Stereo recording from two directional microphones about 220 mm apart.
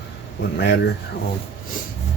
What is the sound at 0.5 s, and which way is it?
Speech, 50° left (ahead or behind).